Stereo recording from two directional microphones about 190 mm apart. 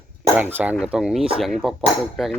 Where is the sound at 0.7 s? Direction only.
5° right (ahead or behind).